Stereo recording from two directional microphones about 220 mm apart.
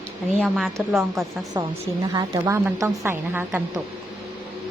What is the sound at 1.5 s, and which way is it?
Speech, 15° right (ahead or behind).